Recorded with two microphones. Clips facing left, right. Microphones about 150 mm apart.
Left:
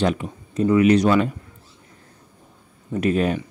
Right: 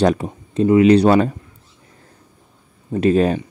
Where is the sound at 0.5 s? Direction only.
25° right (ahead or behind).